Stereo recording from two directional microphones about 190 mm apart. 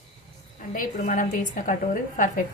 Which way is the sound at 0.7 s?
45° left (ahead or behind).